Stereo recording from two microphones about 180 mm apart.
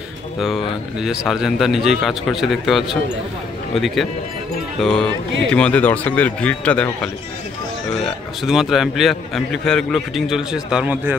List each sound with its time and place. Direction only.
0.4 s a man's voice: centre (ahead or behind)